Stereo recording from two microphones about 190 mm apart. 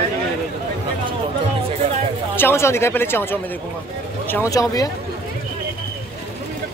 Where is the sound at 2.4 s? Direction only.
15° left (ahead or behind).